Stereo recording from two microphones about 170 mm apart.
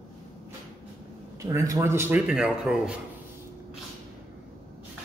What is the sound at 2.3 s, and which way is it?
Speech, 5° right (ahead or behind).